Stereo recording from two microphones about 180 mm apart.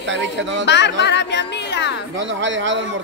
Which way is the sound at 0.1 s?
90° right.